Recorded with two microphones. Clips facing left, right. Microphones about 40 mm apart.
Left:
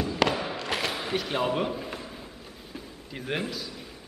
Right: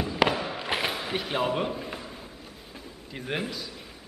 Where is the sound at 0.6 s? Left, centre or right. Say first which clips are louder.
Right 1 dB; centre.